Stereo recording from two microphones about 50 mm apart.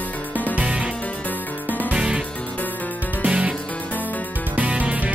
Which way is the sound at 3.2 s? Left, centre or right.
Right.